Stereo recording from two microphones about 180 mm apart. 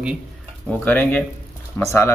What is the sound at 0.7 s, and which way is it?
Speech, 10° left (ahead or behind).